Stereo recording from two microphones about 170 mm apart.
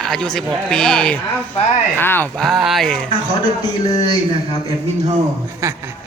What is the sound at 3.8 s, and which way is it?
Speech, 20° left (ahead or behind).